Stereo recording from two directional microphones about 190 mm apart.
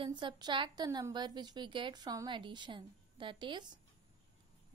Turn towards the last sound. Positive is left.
turn(degrees=-25)  # may be behind; listen again after turning